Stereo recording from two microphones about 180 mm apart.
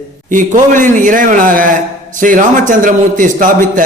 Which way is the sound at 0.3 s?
45° right (ahead or behind).